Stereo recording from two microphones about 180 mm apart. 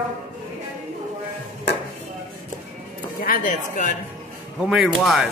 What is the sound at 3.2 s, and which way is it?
Speech, 50° left (ahead or behind).